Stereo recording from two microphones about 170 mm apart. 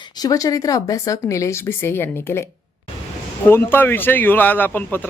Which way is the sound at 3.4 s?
10° left (ahead or behind).